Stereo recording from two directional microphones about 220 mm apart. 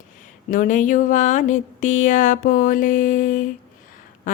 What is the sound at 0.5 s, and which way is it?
Speech, 35° left (ahead or behind).